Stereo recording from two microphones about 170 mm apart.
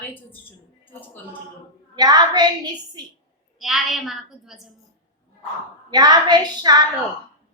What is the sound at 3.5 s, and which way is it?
A woman's voice, centre (ahead or behind).